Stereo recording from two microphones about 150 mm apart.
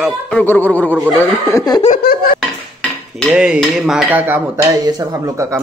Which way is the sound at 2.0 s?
90° left.